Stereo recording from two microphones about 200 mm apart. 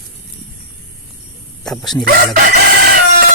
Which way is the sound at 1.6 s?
Centre (ahead or behind).